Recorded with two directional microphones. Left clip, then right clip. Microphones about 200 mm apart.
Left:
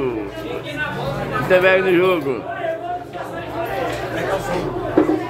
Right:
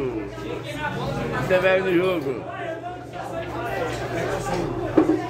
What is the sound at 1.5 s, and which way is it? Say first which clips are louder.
Speech: left 5 dB; 25° left (ahead or behind).